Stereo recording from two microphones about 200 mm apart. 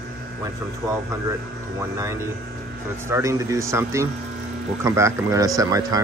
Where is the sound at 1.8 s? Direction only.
15° right (ahead or behind).